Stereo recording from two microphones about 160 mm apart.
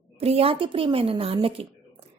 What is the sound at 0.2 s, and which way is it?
Speech, 40° right (ahead or behind).